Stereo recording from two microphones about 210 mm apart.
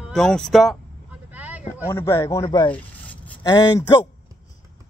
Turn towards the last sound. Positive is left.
turn(degrees=20)  # may be behind; listen again after turning